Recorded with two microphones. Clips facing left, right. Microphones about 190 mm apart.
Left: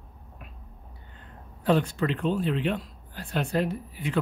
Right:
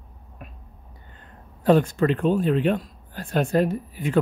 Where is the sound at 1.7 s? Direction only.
45° right (ahead or behind).